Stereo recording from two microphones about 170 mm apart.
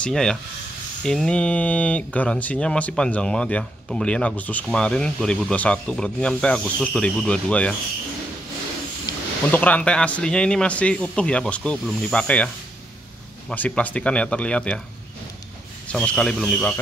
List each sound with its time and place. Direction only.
0.0 s speech: 5° left (ahead or behind)
9.1 s a sound: 20° left (ahead or behind)
9.5 s speech: 10° left (ahead or behind)
13.5 s speech: 5° left (ahead or behind)
15.9 s speech: 5° left (ahead or behind)